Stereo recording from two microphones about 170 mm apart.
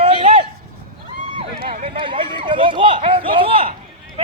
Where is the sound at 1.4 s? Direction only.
30° right (ahead or behind).